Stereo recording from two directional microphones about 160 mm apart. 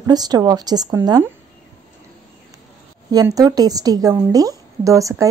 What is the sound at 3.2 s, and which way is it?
Speech, 25° right (ahead or behind).